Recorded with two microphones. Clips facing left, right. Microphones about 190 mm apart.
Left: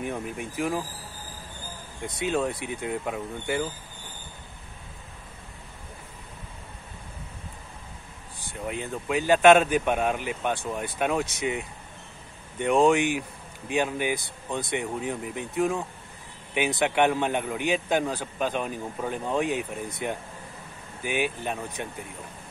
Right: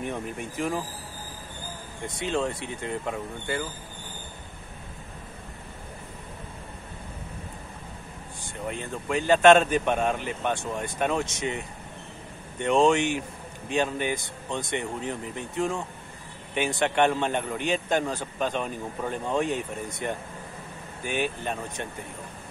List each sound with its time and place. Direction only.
0.0 s speech: 5° left (ahead or behind)
2.1 s speech: 10° left (ahead or behind)
8.6 s speech: 5° left (ahead or behind)